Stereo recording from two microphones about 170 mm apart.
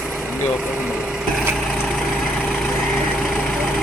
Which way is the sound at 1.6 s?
5° left (ahead or behind).